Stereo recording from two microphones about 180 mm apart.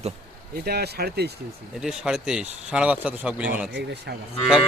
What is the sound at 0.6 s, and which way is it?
Speech, 65° right (ahead or behind).